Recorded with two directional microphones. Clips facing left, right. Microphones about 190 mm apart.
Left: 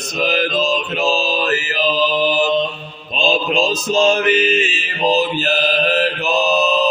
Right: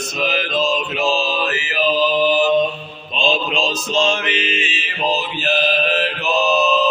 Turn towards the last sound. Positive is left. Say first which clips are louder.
# left 3 dB
turn(degrees=40)  # may be behind; listen again after turning